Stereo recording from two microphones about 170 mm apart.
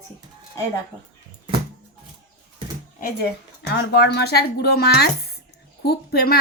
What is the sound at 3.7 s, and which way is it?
A woman's voice, 75° left (ahead or behind).